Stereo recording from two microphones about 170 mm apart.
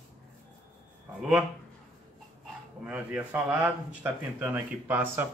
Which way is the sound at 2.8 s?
5° right (ahead or behind).